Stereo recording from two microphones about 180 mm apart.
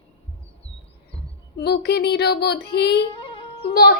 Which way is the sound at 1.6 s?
60° left (ahead or behind).